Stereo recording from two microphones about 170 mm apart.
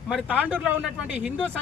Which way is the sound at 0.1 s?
5° right (ahead or behind).